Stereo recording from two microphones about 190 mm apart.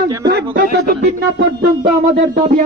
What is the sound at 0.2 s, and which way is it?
A man's voice, 55° right (ahead or behind).